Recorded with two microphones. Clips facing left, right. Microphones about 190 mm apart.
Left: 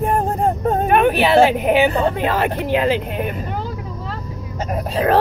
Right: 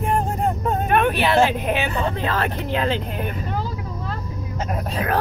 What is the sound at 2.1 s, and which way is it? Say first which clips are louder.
Speech: left 5 dB; 15° left (ahead or behind).